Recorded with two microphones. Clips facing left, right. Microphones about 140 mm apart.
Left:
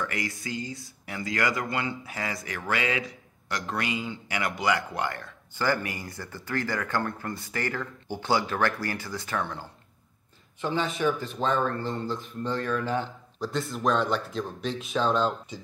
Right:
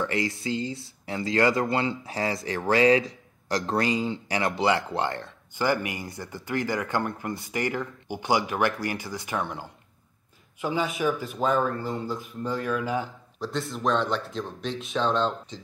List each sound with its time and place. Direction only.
0.0 s a man's voice: 25° right (ahead or behind)
10.6 s speech: 5° right (ahead or behind)